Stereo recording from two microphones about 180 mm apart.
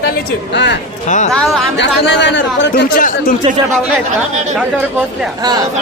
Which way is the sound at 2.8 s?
55° left (ahead or behind).